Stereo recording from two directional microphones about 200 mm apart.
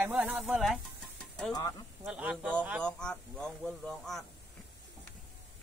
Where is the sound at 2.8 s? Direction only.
5° left (ahead or behind).